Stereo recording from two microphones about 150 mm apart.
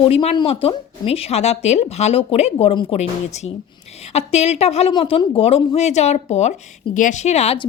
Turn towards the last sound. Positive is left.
turn(degrees=45)  # may be behind; listen again after turning